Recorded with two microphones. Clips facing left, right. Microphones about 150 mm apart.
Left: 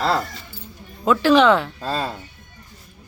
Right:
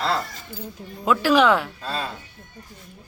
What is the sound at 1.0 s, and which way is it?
Speech, 5° right (ahead or behind).